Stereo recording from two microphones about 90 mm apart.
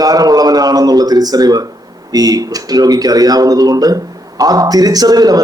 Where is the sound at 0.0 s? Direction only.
45° right (ahead or behind).